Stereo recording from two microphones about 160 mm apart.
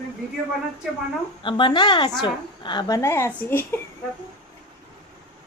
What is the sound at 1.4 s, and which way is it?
A man's voice, 30° left (ahead or behind).